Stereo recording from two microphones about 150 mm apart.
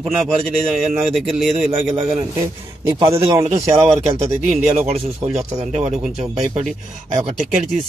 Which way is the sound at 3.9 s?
45° right (ahead or behind).